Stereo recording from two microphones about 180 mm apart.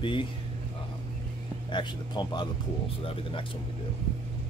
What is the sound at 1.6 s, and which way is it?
Speech, 25° left (ahead or behind).